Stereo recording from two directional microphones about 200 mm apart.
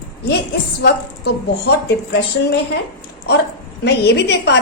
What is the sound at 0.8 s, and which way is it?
A woman's voice, 55° left (ahead or behind).